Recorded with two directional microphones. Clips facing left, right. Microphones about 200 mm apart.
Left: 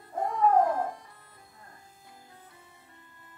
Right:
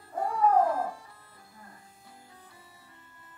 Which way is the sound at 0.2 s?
20° left (ahead or behind).